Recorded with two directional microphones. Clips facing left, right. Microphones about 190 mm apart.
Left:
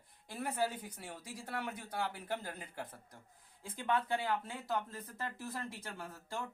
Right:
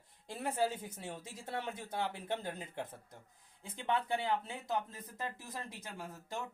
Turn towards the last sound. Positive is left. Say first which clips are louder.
# even
turn(degrees=-15)  # may be behind; listen again after turning